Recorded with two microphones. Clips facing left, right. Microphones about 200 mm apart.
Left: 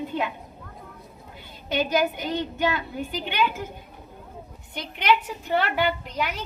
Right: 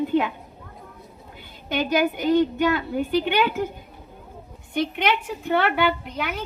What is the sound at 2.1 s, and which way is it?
A woman's voice, 50° right (ahead or behind).